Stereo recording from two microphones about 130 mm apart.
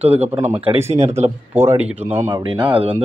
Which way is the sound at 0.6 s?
50° right (ahead or behind).